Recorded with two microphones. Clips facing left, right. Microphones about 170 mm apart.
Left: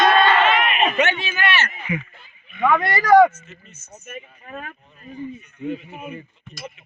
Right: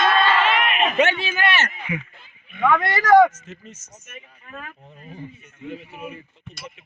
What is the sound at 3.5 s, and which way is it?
Speech, 90° right.